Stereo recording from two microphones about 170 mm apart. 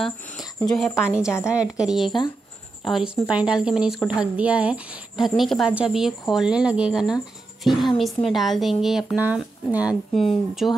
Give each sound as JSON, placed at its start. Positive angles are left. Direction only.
{"t": 0.6, "sound": "a woman's voice", "side_deg": 5}
{"t": 1.2, "sound": "a woman's voice", "side_deg": 15}
{"t": 1.5, "sound": "a woman's voice", "side_deg": -5}